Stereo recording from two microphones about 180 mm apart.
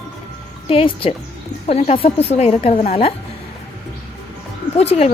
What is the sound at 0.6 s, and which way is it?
Speech, 30° left (ahead or behind).